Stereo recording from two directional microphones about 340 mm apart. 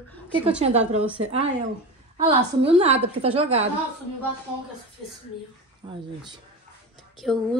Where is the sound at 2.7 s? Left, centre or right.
Centre.